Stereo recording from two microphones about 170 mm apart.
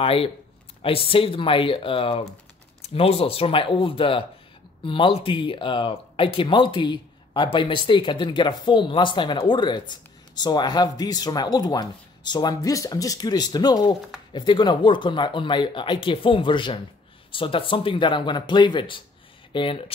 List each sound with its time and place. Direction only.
0.0 s speech: 35° left (ahead or behind)